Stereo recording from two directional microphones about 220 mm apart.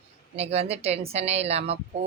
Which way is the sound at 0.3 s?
30° right (ahead or behind).